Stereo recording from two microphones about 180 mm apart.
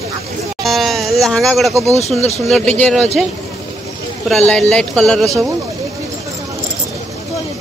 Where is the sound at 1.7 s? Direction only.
15° right (ahead or behind).